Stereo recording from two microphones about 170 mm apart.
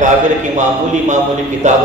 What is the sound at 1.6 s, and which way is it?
Speech, 45° right (ahead or behind).